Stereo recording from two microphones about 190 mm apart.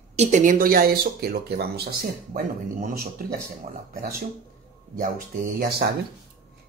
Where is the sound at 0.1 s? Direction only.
40° right (ahead or behind).